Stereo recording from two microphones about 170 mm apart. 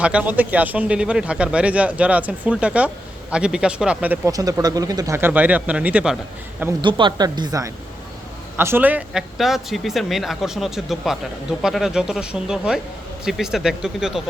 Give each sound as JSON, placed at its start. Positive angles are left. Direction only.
{"t": 0.0, "sound": "speech", "side_deg": -5}
{"t": 4.3, "sound": "speech", "side_deg": -20}
{"t": 6.8, "sound": "speech", "side_deg": -30}